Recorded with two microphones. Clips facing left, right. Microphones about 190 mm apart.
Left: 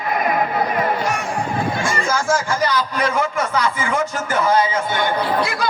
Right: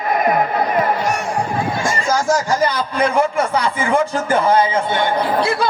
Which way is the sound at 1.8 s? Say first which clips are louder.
Right 5 dB; 40° right (ahead or behind).